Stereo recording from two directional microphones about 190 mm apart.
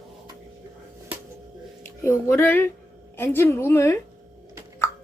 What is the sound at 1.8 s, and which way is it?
Speech, 15° left (ahead or behind).